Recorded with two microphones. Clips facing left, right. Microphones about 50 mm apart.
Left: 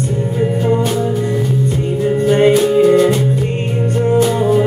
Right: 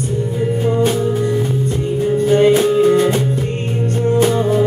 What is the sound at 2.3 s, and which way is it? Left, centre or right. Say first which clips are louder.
Music: left 1 dB; left.